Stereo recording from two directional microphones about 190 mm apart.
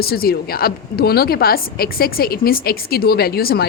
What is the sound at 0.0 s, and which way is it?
A woman's voice, 55° left (ahead or behind).